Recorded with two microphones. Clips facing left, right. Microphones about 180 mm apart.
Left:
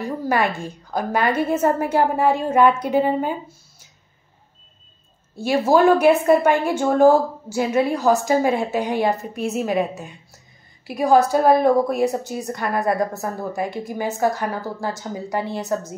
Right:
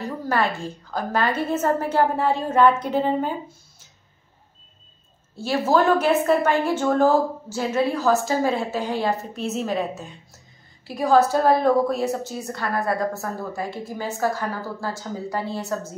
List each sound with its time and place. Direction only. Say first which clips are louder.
0.0 s a woman's voice: left 2 dB; 10° left (ahead or behind)
5.4 s a woman's voice: left 4 dB; 15° left (ahead or behind)